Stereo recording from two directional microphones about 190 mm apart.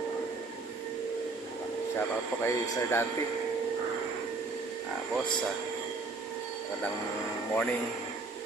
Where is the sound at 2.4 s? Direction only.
15° left (ahead or behind).